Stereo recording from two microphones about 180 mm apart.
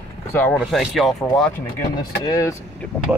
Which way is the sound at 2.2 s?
15° left (ahead or behind).